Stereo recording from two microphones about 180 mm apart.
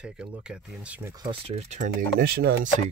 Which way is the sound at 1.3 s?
35° right (ahead or behind).